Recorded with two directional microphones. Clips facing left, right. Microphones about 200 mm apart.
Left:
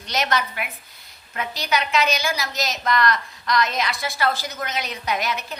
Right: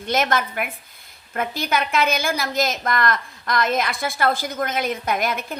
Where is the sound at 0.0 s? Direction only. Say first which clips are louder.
Right 3 dB; 50° right (ahead or behind).